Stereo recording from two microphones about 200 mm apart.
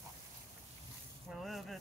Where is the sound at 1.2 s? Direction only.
Centre (ahead or behind).